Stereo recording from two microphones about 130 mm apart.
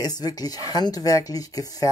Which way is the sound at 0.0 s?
30° left (ahead or behind).